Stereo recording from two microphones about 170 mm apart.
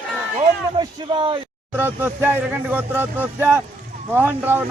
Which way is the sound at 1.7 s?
10° right (ahead or behind).